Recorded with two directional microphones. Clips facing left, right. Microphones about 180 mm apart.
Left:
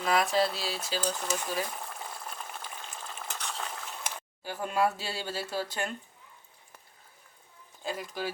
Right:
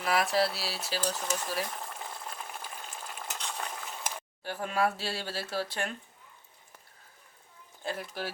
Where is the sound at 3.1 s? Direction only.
5° right (ahead or behind).